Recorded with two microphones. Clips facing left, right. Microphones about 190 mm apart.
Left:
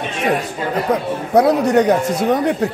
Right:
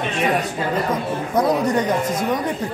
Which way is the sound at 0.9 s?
70° left (ahead or behind).